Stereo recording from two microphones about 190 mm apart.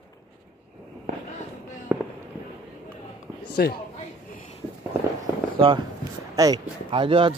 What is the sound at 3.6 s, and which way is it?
Speech, 55° left (ahead or behind).